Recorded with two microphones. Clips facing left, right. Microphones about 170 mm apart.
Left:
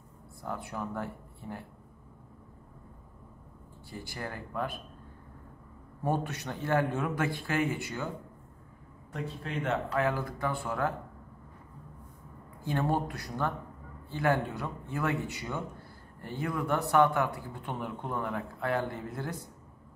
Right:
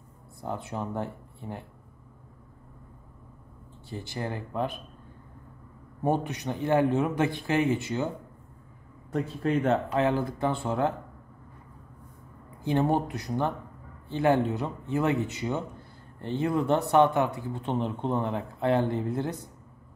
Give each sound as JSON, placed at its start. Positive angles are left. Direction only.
{"t": 0.4, "sound": "speech", "side_deg": -25}
{"t": 3.9, "sound": "speech", "side_deg": -20}
{"t": 6.0, "sound": "speech", "side_deg": -15}
{"t": 9.1, "sound": "speech", "side_deg": -40}
{"t": 9.8, "sound": "speech", "side_deg": -25}
{"t": 12.6, "sound": "speech", "side_deg": -20}